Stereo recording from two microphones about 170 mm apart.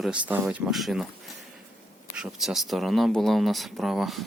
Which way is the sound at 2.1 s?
5° right (ahead or behind).